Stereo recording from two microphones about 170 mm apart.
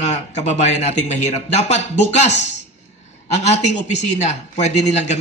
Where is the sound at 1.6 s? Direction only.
45° left (ahead or behind).